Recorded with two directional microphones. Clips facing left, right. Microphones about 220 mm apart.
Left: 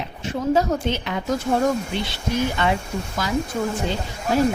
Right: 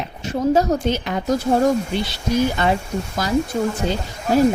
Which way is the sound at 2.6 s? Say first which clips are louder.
Right 2 dB; 40° right (ahead or behind).